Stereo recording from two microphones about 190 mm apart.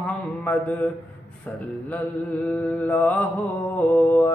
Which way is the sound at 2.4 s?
10° left (ahead or behind).